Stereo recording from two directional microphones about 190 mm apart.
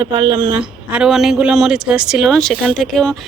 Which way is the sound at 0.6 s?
5° right (ahead or behind).